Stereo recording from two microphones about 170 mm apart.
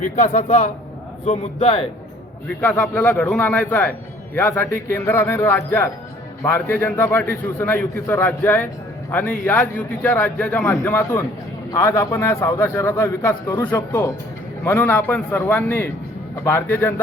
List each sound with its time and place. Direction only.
0.0 s a man's voice: 45° left (ahead or behind)
2.6 s a man's voice: 10° left (ahead or behind)